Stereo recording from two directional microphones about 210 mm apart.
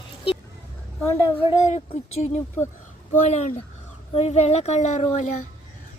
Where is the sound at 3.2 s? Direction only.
35° left (ahead or behind).